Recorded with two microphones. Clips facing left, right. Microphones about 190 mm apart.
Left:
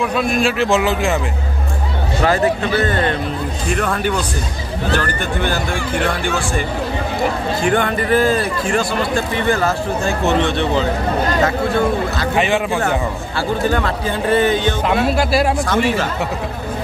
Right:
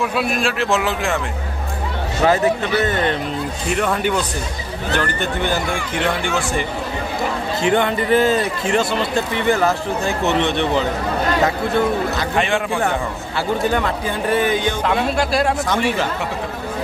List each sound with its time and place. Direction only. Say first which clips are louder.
0.1 s a man's voice: left 3 dB; 5° right (ahead or behind)
3.7 s a man's voice: right 1 dB; 20° right (ahead or behind)
7.6 s a man's voice: right 1 dB; 20° right (ahead or behind)
12.4 s a man's voice: left 3 dB; 5° left (ahead or behind)
13.7 s speech: left 1 dB; 10° right (ahead or behind)
14.9 s speech: left 3 dB; 5° left (ahead or behind)
15.6 s a man's voice: left 2 dB; 20° right (ahead or behind)